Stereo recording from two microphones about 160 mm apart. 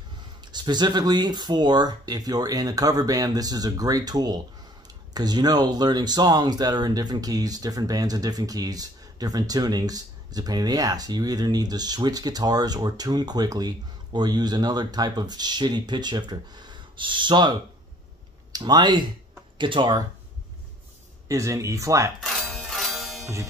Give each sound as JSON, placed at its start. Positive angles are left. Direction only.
{"t": 0.4, "sound": "speech", "side_deg": -25}
{"t": 21.3, "sound": "speech", "side_deg": -20}
{"t": 22.2, "sound": "music", "side_deg": 0}